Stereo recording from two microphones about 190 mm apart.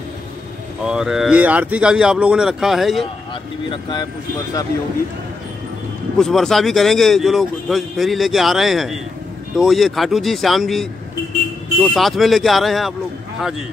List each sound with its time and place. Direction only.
0.8 s speech: 5° right (ahead or behind)
3.7 s speech: 25° left (ahead or behind)
6.1 s speech: centre (ahead or behind)